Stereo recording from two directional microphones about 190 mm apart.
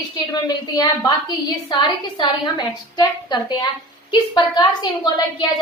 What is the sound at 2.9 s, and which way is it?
A woman's voice, 20° left (ahead or behind).